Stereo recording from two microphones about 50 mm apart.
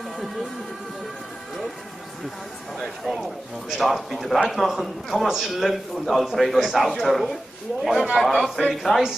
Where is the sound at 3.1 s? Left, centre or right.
Centre.